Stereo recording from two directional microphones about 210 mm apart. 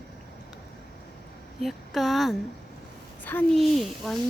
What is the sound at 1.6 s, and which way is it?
A woman's voice, centre (ahead or behind).